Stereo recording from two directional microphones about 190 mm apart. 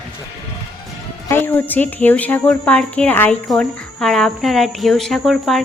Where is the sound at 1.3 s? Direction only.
10° left (ahead or behind).